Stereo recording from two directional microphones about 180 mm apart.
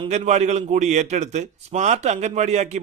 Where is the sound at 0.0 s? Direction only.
40° right (ahead or behind).